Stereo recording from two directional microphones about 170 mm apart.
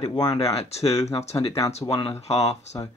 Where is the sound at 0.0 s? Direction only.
25° left (ahead or behind).